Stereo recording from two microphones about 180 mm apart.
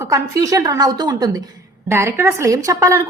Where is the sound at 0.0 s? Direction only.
20° right (ahead or behind).